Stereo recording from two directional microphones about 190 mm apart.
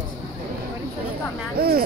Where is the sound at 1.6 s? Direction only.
55° right (ahead or behind).